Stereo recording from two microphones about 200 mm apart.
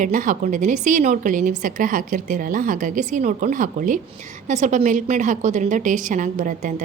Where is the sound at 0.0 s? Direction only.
40° right (ahead or behind).